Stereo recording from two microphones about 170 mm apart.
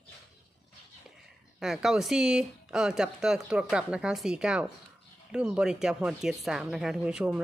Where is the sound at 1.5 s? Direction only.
Centre (ahead or behind).